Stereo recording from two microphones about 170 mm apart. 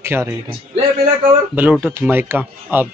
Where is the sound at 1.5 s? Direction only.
10° right (ahead or behind).